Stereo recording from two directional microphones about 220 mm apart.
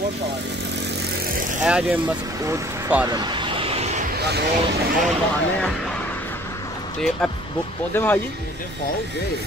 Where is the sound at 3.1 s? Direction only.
20° right (ahead or behind).